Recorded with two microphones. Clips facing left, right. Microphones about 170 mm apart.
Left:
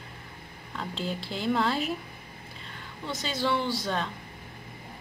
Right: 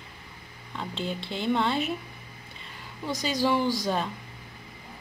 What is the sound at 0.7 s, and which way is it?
A woman's voice, centre (ahead or behind).